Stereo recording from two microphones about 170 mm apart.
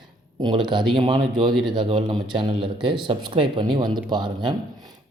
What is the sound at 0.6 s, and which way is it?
Speech, 30° right (ahead or behind).